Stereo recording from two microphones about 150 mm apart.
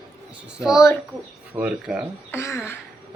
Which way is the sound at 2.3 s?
15° left (ahead or behind).